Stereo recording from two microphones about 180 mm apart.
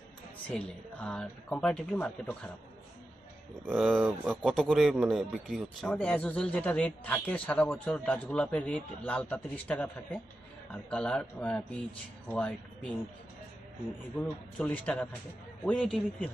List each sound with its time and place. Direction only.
0.5 s speech: 5° left (ahead or behind)
3.7 s speech: centre (ahead or behind)
14.2 s speech: 10° left (ahead or behind)